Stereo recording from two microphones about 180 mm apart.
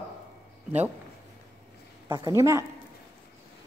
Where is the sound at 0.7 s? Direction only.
10° right (ahead or behind).